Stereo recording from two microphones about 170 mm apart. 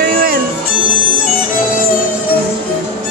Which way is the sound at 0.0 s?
60° right (ahead or behind).